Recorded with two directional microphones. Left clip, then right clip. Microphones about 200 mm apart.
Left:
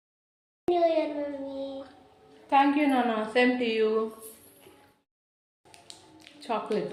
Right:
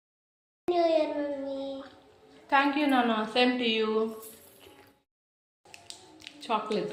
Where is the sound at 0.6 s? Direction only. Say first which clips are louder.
Left 1 dB; centre (ahead or behind).